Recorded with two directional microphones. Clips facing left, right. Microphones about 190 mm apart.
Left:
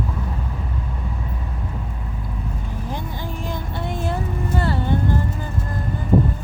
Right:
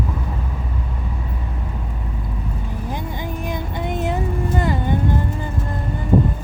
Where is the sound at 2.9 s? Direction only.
15° right (ahead or behind).